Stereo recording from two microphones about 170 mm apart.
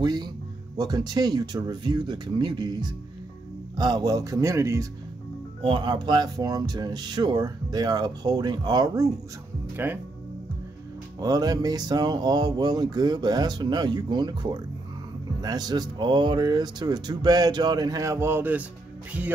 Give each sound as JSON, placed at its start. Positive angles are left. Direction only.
{"t": 0.0, "sound": "speech", "side_deg": -25}
{"t": 5.6, "sound": "speech", "side_deg": -30}
{"t": 11.1, "sound": "speech", "side_deg": -20}